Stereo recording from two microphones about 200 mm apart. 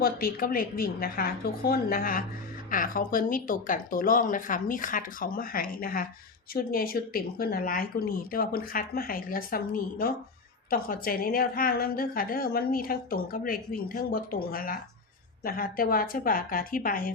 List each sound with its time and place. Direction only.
0.0 s a woman's voice: 45° left (ahead or behind)